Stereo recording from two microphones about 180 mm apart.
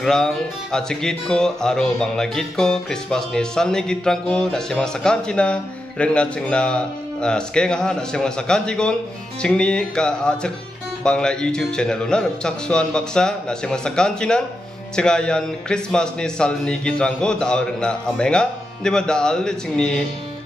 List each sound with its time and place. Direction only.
0.0 s speech: 5° left (ahead or behind)